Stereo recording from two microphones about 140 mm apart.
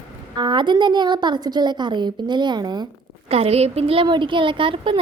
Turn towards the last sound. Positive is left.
turn(degrees=-40)  # may be behind; listen again after turning